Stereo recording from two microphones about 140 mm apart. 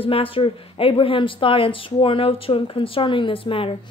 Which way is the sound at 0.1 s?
40° left (ahead or behind).